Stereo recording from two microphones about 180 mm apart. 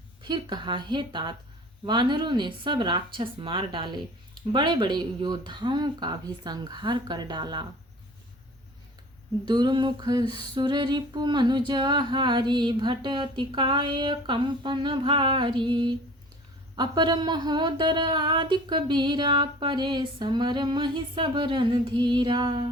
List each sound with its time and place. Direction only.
0.2 s speech: 25° right (ahead or behind)
9.5 s speech: 25° right (ahead or behind)